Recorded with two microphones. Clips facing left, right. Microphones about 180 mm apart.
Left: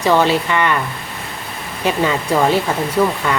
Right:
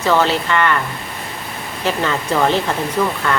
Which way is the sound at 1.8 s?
15° left (ahead or behind).